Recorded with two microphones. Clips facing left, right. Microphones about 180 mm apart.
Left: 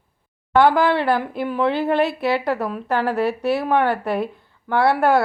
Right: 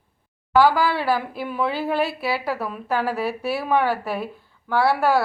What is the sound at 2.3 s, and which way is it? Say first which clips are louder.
Speech: left 4 dB; 5° right (ahead or behind).